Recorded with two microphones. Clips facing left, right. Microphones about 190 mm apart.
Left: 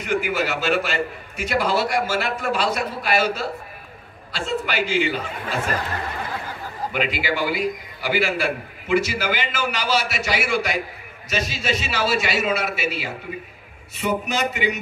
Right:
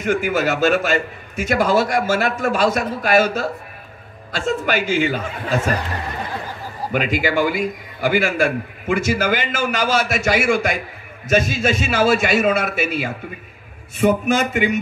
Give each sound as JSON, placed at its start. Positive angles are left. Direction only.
{"t": 0.0, "sound": "a man's voice", "side_deg": -45}
{"t": 6.9, "sound": "a man's voice", "side_deg": -45}